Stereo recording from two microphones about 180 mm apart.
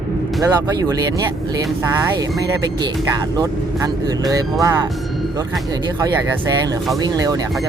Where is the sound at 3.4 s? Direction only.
20° right (ahead or behind).